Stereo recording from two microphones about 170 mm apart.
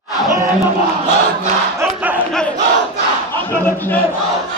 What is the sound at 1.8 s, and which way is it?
Speech, 10° right (ahead or behind).